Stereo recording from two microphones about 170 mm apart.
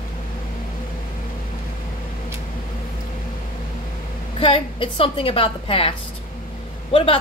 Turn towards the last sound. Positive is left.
turn(degrees=30)  # may be behind; listen again after turning